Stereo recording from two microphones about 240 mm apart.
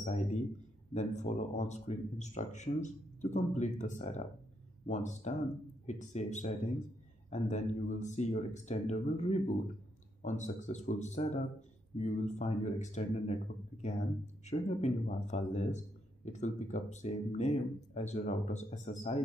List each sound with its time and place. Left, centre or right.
0.0 s speech: left